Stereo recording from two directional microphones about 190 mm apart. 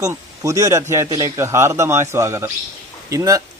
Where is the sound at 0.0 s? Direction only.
15° right (ahead or behind).